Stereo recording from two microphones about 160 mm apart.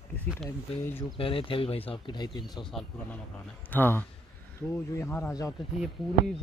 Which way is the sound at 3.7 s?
10° left (ahead or behind).